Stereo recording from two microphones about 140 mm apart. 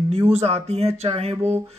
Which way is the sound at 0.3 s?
50° right (ahead or behind).